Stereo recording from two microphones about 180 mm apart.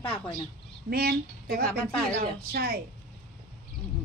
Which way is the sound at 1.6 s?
10° left (ahead or behind).